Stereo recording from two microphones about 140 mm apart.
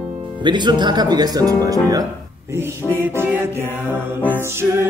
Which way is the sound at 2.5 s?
15° right (ahead or behind).